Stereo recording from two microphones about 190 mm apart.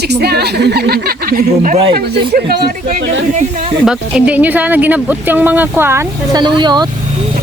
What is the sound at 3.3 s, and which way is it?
Speech, 40° right (ahead or behind).